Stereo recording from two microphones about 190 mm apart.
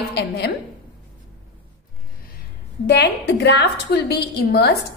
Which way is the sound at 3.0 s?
60° left (ahead or behind).